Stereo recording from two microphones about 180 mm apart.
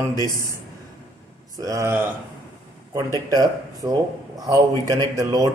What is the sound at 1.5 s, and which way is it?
Speech, 20° right (ahead or behind).